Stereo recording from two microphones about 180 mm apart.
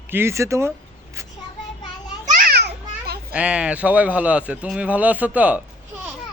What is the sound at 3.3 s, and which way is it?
A man's voice, 5° right (ahead or behind).